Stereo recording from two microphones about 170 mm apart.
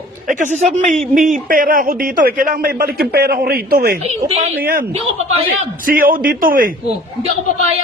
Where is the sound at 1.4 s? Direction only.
55° right (ahead or behind).